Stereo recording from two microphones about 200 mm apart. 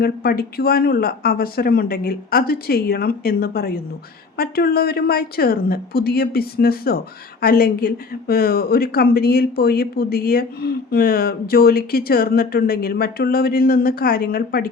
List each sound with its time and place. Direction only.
0.0 s speech: 50° left (ahead or behind)